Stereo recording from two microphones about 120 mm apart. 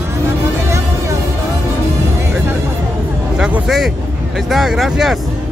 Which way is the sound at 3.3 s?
5° right (ahead or behind).